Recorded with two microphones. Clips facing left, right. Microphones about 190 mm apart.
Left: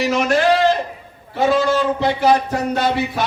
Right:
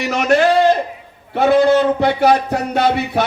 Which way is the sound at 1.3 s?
60° right (ahead or behind).